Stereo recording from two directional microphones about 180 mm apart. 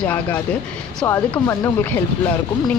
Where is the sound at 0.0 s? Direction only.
10° left (ahead or behind).